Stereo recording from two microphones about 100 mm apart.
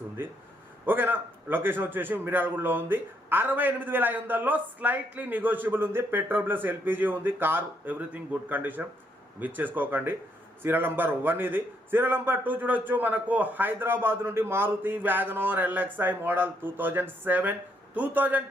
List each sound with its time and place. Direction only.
0.2 s a man's voice: 20° right (ahead or behind)